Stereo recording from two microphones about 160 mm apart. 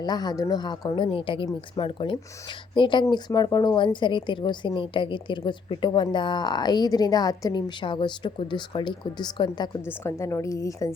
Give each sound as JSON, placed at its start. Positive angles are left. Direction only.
{"t": 0.0, "sound": "a woman's voice", "side_deg": 25}
{"t": 9.8, "sound": "a woman's voice", "side_deg": 15}